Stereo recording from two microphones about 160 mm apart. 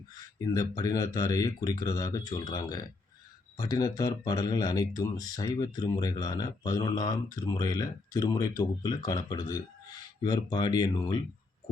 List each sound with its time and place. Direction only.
0.3 s speech: 20° left (ahead or behind)